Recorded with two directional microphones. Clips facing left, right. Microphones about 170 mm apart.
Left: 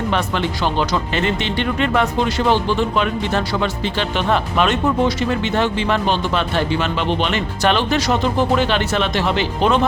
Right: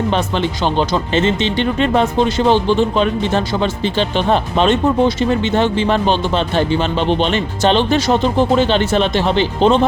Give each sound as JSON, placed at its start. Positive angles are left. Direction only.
{"t": 0.1, "sound": "speech", "side_deg": -25}